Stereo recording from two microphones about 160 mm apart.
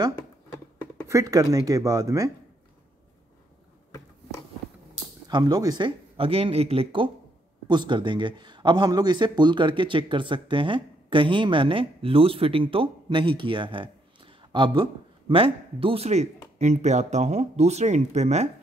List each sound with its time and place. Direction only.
1.0 s speech: 20° right (ahead or behind)
5.3 s a man's voice: 25° right (ahead or behind); by 18.5 s 45° right (ahead or behind)